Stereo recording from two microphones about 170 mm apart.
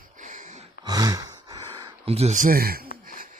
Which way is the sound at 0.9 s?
20° right (ahead or behind).